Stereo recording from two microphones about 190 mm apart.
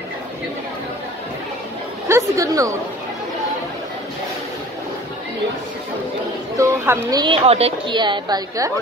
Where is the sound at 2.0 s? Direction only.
15° right (ahead or behind).